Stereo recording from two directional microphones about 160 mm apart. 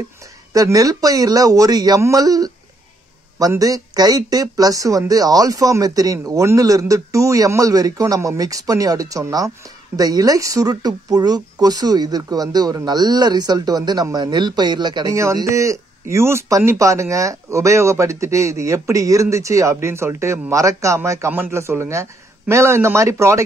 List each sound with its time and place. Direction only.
0.5 s speech: 20° right (ahead or behind)